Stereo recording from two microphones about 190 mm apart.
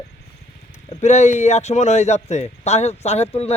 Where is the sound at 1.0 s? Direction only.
40° left (ahead or behind).